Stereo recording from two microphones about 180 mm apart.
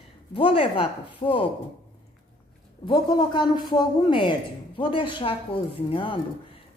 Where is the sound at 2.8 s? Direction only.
25° left (ahead or behind).